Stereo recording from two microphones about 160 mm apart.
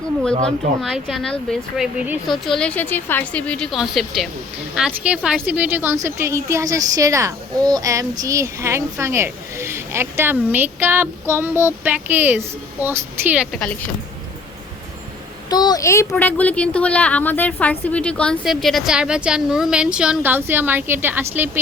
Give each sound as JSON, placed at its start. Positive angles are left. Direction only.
{"t": 0.8, "sound": "a woman's voice", "side_deg": 0}
{"t": 15.4, "sound": "speech", "side_deg": 25}